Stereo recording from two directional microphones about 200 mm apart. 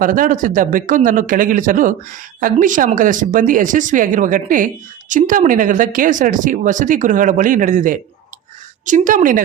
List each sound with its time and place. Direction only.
0.0 s speech: 45° right (ahead or behind)